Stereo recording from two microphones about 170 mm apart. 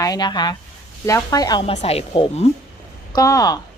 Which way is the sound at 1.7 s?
35° left (ahead or behind).